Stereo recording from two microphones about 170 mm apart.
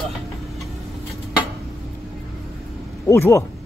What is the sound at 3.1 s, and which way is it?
Speech, 15° left (ahead or behind).